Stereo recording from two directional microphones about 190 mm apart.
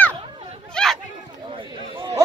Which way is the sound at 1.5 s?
25° right (ahead or behind).